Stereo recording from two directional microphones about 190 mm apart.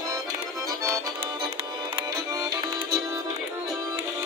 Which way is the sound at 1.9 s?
15° right (ahead or behind).